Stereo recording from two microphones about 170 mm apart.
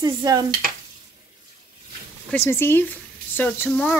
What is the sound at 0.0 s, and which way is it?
Sizzle, 20° right (ahead or behind).